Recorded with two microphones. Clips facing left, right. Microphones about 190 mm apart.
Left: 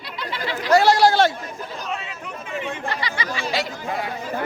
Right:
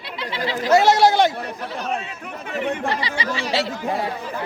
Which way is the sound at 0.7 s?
20° right (ahead or behind).